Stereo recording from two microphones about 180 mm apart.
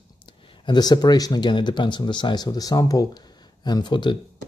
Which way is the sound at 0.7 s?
20° left (ahead or behind).